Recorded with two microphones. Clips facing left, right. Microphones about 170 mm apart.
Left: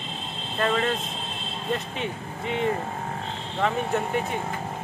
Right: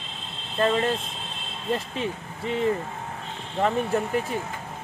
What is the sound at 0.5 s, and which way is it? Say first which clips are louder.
Speech: right 2 dB; 30° right (ahead or behind).